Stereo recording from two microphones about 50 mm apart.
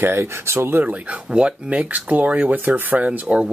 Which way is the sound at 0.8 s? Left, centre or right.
Right.